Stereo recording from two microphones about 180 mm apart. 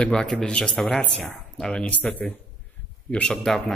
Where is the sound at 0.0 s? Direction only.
5° left (ahead or behind).